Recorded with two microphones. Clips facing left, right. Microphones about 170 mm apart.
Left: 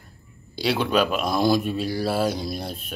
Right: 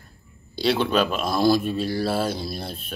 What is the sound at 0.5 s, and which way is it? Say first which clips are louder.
Speech: right 1 dB; 10° left (ahead or behind).